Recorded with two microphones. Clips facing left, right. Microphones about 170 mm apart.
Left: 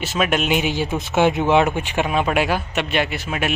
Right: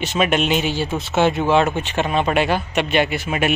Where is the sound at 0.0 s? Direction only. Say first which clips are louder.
Right 2 dB; 5° left (ahead or behind).